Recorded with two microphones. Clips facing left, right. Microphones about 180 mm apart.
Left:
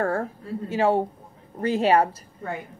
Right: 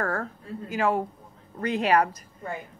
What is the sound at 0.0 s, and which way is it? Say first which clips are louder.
A woman's voice: left 4 dB; 30° left (ahead or behind).